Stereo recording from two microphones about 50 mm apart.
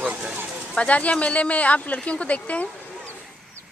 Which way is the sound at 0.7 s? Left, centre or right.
Left.